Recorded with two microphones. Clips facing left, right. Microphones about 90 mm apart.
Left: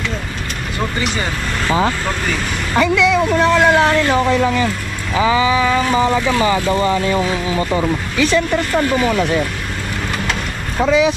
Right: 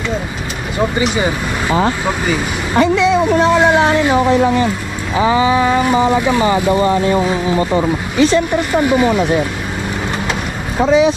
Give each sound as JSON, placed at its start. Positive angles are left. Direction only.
{"t": 1.1, "sound": "speech", "side_deg": -10}
{"t": 2.7, "sound": "speech", "side_deg": -20}
{"t": 5.2, "sound": "vehicle", "side_deg": -35}
{"t": 5.8, "sound": "speech", "side_deg": -15}
{"t": 7.3, "sound": "speech", "side_deg": -10}